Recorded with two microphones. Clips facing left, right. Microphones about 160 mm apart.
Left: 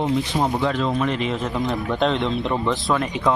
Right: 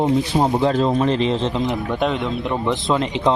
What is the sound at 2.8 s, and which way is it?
Speech, 20° right (ahead or behind).